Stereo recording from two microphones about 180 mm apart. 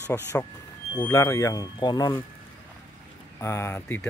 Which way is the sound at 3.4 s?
15° left (ahead or behind).